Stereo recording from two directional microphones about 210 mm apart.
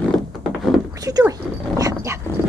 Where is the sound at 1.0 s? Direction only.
15° right (ahead or behind).